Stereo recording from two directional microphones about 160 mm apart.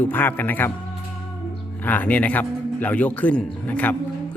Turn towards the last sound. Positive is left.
turn(degrees=10)  # may be behind; listen again after turning